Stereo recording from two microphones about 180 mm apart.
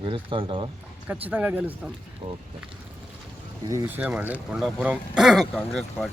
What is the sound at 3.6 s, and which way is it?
A man's voice, 15° right (ahead or behind).